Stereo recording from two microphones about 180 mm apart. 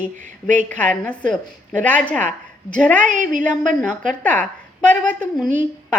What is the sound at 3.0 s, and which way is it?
Speech, 45° right (ahead or behind).